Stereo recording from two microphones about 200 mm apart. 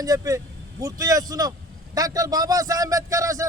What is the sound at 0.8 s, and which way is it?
A man's voice, 15° right (ahead or behind).